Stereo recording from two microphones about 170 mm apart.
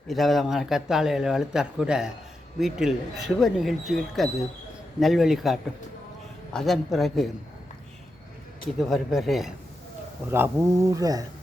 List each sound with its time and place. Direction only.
0.1 s speech: centre (ahead or behind)
8.8 s speech: centre (ahead or behind)
10.3 s speech: 15° right (ahead or behind)